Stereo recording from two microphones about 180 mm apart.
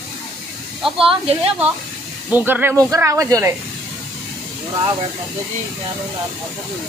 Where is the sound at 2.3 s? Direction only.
10° right (ahead or behind).